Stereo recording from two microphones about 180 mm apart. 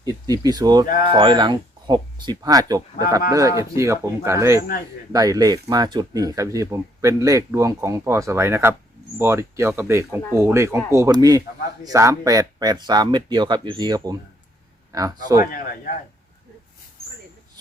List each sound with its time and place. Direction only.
0.0 s speech: 20° right (ahead or behind)